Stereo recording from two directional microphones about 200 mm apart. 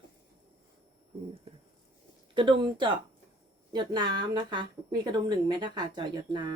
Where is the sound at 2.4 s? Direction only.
25° right (ahead or behind).